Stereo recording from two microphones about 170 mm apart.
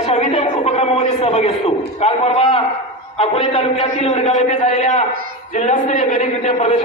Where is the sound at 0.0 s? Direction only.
40° left (ahead or behind).